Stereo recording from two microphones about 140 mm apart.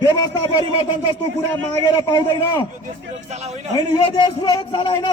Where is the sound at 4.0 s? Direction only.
35° left (ahead or behind).